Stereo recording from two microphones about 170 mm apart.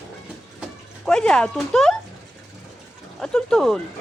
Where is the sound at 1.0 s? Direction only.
5° left (ahead or behind).